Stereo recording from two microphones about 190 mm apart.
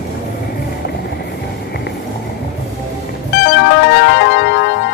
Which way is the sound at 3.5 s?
60° left (ahead or behind).